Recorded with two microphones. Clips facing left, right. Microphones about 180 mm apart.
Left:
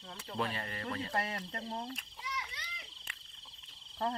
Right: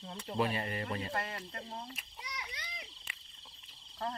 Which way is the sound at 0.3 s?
15° right (ahead or behind).